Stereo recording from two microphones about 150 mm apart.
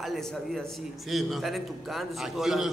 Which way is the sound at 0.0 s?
Centre (ahead or behind).